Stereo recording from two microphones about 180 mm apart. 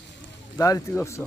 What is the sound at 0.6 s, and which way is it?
Speech, 20° left (ahead or behind).